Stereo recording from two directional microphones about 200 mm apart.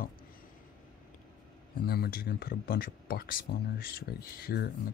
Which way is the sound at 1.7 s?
50° left (ahead or behind).